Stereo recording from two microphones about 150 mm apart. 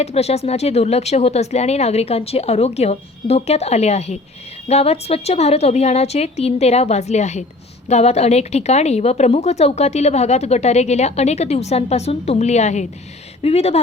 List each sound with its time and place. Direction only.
0.0 s a woman's voice: 45° left (ahead or behind)